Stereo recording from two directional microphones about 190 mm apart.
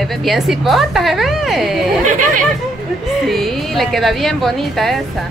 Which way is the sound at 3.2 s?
Centre (ahead or behind).